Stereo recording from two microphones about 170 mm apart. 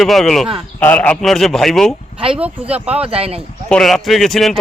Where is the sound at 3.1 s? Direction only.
35° right (ahead or behind).